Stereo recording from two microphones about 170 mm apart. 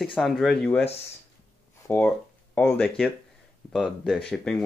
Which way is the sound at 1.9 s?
10° left (ahead or behind).